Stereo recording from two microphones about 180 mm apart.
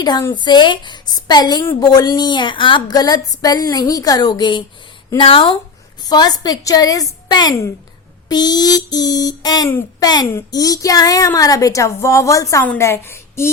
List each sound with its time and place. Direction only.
0.0 s speech: 20° left (ahead or behind)
9.6 s a woman's voice: 10° left (ahead or behind)